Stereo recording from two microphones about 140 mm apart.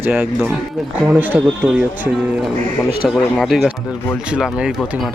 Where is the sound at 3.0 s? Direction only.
Centre (ahead or behind).